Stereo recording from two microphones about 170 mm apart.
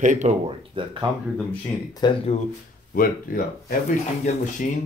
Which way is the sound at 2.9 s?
60° left (ahead or behind).